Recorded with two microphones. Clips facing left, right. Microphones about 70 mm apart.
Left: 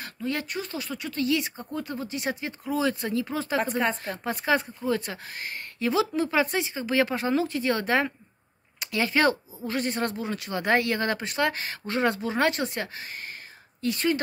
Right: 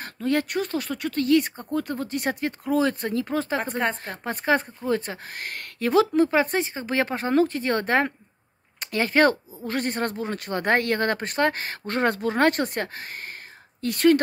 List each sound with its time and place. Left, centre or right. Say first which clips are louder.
0.0 s a woman's voice: right 6 dB; right
13.7 s speech: right 7 dB; right